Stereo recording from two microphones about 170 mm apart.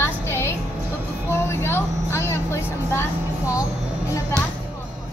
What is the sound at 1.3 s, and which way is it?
Vehicle, 15° left (ahead or behind).